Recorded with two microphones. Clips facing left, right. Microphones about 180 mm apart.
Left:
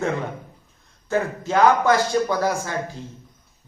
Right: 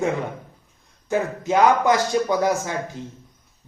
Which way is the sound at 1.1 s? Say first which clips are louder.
Right 1 dB; 15° right (ahead or behind).